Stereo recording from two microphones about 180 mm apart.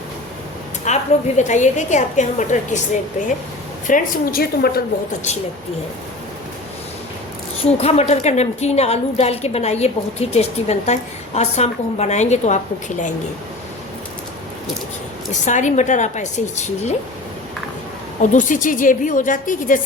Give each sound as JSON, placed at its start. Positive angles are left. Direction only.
{"t": 0.9, "sound": "a woman's voice", "side_deg": 40}
{"t": 7.8, "sound": "a woman's voice", "side_deg": 35}
{"t": 15.3, "sound": "a woman's voice", "side_deg": 40}
{"t": 18.2, "sound": "a woman's voice", "side_deg": 45}